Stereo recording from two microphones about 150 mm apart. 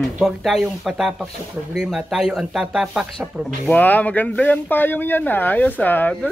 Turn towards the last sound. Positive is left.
turn(degrees=10)  # may be behind; listen again after turning